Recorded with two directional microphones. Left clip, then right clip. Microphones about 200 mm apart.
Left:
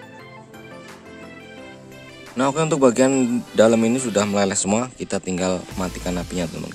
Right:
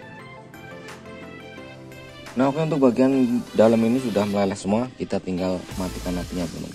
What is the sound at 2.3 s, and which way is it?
Speech, 25° left (ahead or behind).